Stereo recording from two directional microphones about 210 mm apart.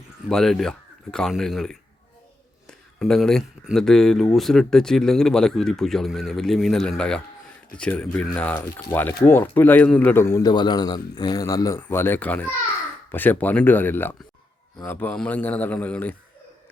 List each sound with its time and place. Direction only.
0.3 s a man's voice: centre (ahead or behind)